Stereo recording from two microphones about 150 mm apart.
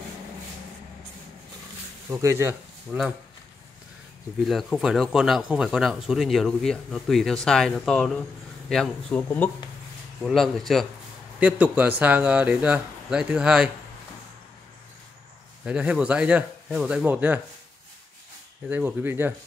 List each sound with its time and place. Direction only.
2.0 s speech: 15° right (ahead or behind)
4.5 s speech: centre (ahead or behind)
10.2 s speech: centre (ahead or behind)
15.6 s speech: 10° right (ahead or behind)
18.7 s speech: 15° right (ahead or behind)